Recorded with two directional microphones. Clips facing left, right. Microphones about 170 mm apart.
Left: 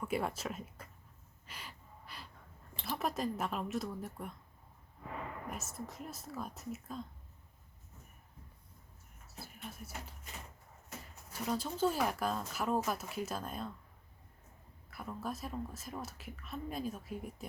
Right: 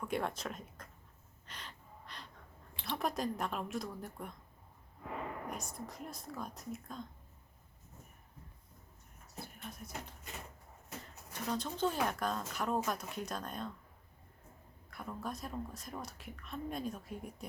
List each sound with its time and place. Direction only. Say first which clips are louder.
0.0 s speech: left 1 dB; 5° left (ahead or behind)
1.5 s gasp: even; 10° left (ahead or behind)
2.8 s speech: even; centre (ahead or behind)
5.5 s speech: even; 5° left (ahead or behind)
9.2 s a sound: right 1 dB; 5° left (ahead or behind)
11.4 s speech: left 2 dB; 5° left (ahead or behind)
14.8 s speech: left 1 dB; centre (ahead or behind)